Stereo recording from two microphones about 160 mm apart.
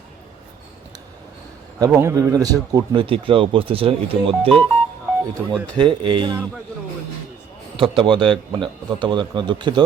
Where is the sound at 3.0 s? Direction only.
35° right (ahead or behind).